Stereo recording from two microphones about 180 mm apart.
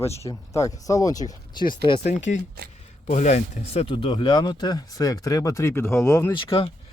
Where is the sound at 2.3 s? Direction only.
45° left (ahead or behind); by 6.3 s 15° left (ahead or behind).